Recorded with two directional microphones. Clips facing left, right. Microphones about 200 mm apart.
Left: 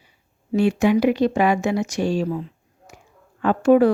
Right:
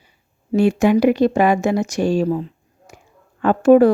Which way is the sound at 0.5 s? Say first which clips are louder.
Right 3 dB; 45° right (ahead or behind).